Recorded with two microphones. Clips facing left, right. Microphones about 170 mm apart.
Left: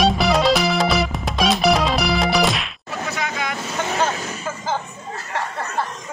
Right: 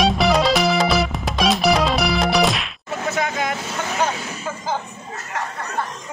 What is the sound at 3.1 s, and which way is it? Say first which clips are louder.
Vehicle: right 4 dB; 50° right (ahead or behind).